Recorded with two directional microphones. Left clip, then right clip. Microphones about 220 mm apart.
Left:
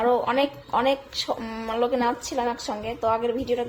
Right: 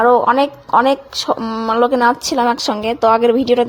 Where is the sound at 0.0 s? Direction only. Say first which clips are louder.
Right 10 dB; 30° right (ahead or behind).